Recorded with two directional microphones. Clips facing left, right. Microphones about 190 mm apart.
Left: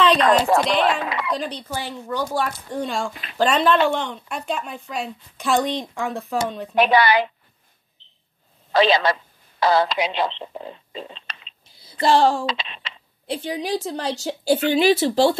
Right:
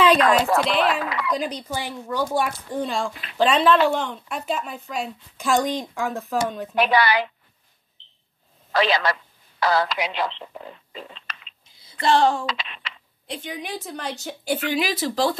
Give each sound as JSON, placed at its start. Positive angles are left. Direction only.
{"t": 0.2, "sound": "speech", "side_deg": 30}
{"t": 1.6, "sound": "a woman's voice", "side_deg": -15}
{"t": 6.7, "sound": "speech", "side_deg": 20}
{"t": 8.7, "sound": "speech", "side_deg": 25}